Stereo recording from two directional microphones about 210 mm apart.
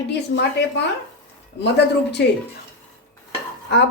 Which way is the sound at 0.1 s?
55° left (ahead or behind).